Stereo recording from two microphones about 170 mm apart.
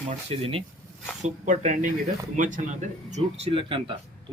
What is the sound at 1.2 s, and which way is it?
Speech, 45° right (ahead or behind).